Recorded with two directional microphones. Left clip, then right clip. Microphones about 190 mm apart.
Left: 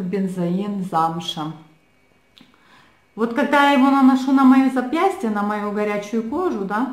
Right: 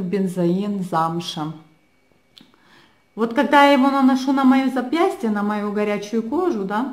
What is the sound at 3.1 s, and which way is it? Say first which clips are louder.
Speech: right 2 dB; 35° right (ahead or behind).